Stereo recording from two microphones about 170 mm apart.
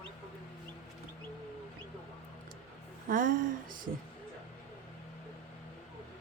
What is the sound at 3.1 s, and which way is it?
Speech, 50° right (ahead or behind).